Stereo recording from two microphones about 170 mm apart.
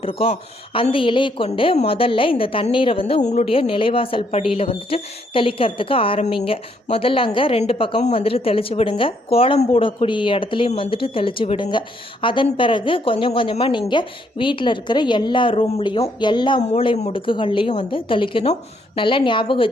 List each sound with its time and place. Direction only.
0.0 s a woman's voice: 35° left (ahead or behind)